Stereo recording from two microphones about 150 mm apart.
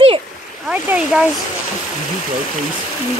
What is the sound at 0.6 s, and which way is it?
Speech, 5° right (ahead or behind).